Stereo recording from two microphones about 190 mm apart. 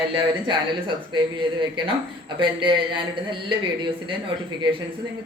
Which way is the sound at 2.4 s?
25° right (ahead or behind).